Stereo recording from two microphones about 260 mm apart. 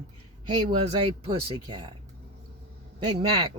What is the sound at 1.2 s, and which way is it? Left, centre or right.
Speech, centre.